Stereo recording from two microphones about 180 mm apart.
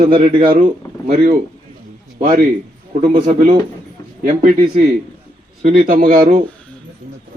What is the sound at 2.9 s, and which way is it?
Speech, 45° right (ahead or behind).